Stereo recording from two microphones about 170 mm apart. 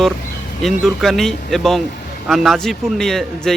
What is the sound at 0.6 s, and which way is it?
Speech, centre (ahead or behind).